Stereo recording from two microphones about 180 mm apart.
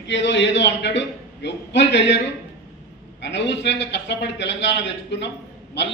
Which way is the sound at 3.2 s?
80° left.